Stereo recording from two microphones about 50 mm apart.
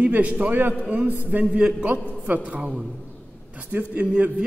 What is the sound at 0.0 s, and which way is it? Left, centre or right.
A man's voice, right.